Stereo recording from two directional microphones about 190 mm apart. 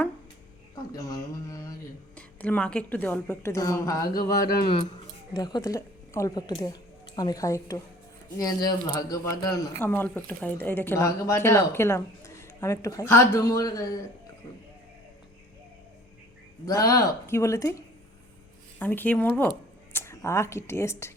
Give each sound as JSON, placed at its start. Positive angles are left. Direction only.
{"t": 0.9, "sound": "speech", "side_deg": 20}
{"t": 16.6, "sound": "speech", "side_deg": 20}